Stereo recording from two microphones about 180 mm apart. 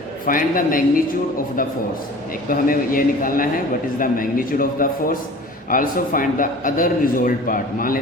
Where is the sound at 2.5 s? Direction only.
50° left (ahead or behind).